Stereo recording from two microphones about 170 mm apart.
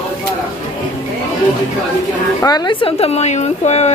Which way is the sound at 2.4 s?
25° left (ahead or behind).